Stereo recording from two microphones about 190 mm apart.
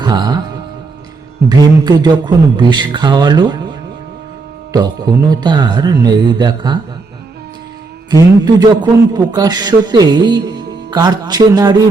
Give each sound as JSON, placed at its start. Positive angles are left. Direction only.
{"t": 0.0, "sound": "music", "side_deg": -20}
{"t": 1.5, "sound": "speech", "side_deg": -20}
{"t": 8.1, "sound": "speech", "side_deg": -20}